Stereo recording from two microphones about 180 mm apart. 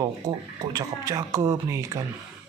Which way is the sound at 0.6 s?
20° right (ahead or behind).